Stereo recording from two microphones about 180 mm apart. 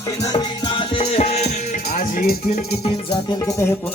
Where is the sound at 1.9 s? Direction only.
50° left (ahead or behind).